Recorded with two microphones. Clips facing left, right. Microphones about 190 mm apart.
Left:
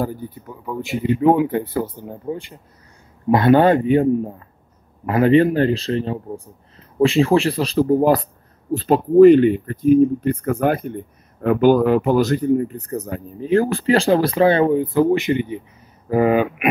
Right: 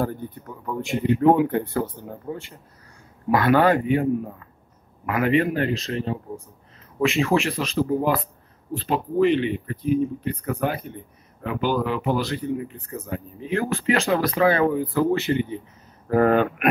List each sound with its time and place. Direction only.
0.0 s a man's voice: 5° left (ahead or behind)